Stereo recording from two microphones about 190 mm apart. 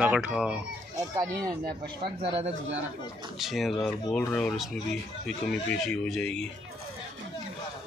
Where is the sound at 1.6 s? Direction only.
55° right (ahead or behind).